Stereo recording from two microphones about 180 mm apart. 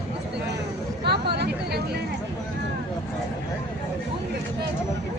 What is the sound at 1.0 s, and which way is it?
Vehicle, 65° right (ahead or behind).